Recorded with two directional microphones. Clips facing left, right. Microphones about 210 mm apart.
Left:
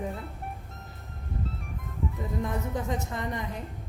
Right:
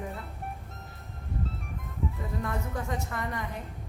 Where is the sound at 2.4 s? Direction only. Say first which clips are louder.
Left 3 dB; 20° left (ahead or behind).